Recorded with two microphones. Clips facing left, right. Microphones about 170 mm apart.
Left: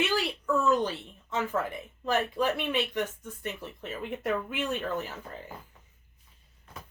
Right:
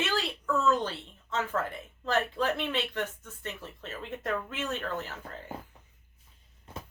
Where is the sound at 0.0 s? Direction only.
15° left (ahead or behind).